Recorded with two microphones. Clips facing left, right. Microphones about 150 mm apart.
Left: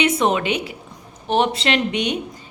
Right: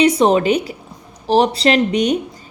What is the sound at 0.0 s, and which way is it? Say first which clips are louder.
A woman's voice: right 6 dB; 35° right (ahead or behind).